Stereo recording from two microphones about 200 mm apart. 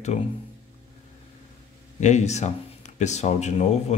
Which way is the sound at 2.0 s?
35° left (ahead or behind).